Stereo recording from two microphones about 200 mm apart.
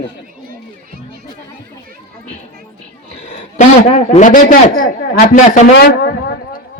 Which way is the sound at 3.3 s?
35° left (ahead or behind).